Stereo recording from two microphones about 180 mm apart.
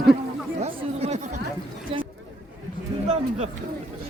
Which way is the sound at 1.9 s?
30° right (ahead or behind).